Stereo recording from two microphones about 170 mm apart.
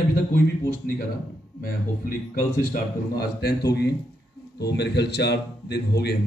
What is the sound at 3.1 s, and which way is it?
A man's voice, 70° left (ahead or behind).